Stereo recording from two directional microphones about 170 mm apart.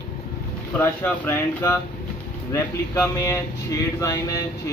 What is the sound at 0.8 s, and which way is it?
A man's voice, 15° left (ahead or behind).